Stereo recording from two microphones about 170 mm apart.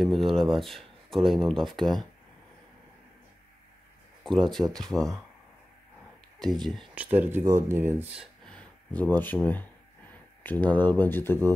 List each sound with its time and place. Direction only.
0.0 s speech: centre (ahead or behind)
4.2 s speech: centre (ahead or behind)
6.4 s speech: centre (ahead or behind)
7.2 s speech: 15° right (ahead or behind)
8.5 s speech: 5° left (ahead or behind)